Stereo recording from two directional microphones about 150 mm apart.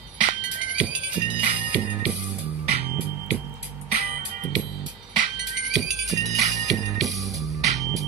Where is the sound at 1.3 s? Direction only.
40° right (ahead or behind).